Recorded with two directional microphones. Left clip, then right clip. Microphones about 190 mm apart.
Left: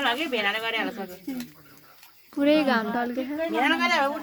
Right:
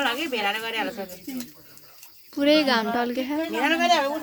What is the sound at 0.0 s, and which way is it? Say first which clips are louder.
Speech: even; 35° left (ahead or behind).